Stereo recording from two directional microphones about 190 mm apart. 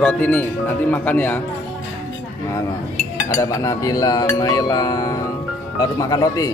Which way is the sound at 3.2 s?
15° left (ahead or behind).